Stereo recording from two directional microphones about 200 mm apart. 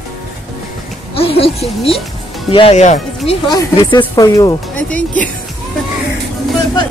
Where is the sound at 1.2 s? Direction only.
30° left (ahead or behind).